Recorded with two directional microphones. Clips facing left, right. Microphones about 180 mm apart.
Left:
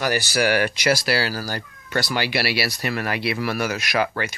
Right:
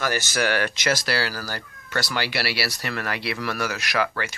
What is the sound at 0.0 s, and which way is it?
Speech, 10° left (ahead or behind).